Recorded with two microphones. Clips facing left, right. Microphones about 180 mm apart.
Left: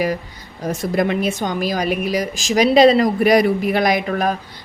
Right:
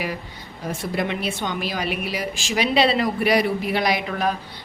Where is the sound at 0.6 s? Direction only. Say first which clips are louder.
Left 6 dB; 45° left (ahead or behind).